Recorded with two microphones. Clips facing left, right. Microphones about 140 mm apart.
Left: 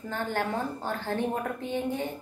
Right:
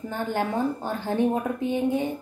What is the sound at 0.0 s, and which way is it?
A woman's voice, 15° right (ahead or behind).